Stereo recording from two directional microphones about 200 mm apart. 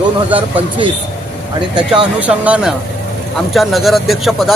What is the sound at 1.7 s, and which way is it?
Speech, 5° right (ahead or behind).